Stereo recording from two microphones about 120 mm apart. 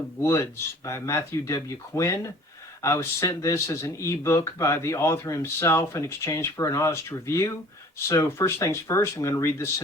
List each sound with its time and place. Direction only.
0.2 s speech: 25° left (ahead or behind)